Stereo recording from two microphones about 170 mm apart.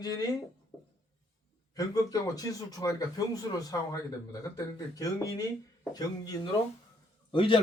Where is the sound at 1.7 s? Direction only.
20° left (ahead or behind).